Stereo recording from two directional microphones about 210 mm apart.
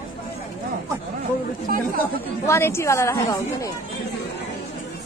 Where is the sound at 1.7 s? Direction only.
45° right (ahead or behind).